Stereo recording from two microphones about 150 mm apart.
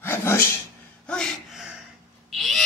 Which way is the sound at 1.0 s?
Centre (ahead or behind).